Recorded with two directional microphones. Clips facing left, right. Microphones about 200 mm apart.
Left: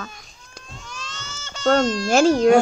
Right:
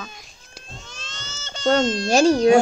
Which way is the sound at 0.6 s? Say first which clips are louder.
Left 3 dB; 25° right (ahead or behind).